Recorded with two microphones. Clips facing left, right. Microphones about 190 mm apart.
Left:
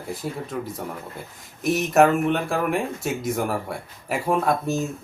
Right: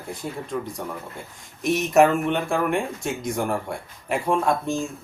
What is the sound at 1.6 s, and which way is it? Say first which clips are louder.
Speech: even; centre (ahead or behind).